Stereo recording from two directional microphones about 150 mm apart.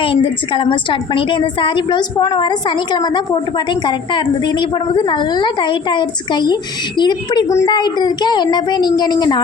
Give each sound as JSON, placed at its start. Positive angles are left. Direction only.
{"t": 0.0, "sound": "a woman's voice", "side_deg": 35}